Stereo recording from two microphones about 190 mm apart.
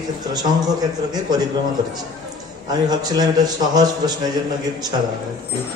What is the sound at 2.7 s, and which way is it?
A man's voice, 20° right (ahead or behind).